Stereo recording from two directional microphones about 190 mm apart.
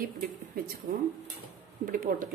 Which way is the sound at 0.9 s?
50° right (ahead or behind).